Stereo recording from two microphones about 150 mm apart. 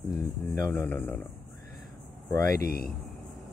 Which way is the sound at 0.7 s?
15° left (ahead or behind).